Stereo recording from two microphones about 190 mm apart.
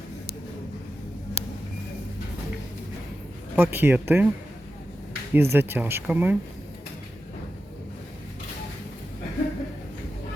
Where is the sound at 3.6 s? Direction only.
10° right (ahead or behind).